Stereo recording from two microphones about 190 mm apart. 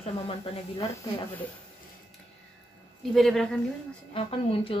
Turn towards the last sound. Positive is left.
turn(degrees=30)  # may be behind; listen again after turning